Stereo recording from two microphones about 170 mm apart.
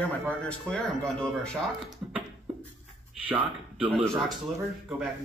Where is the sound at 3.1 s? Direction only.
10° right (ahead or behind).